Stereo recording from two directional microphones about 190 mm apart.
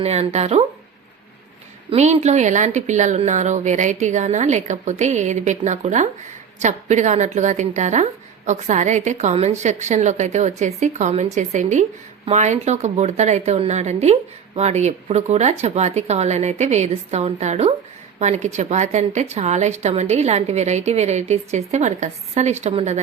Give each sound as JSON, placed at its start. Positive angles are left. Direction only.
{"t": 0.0, "sound": "speech", "side_deg": -35}
{"t": 1.9, "sound": "speech", "side_deg": -35}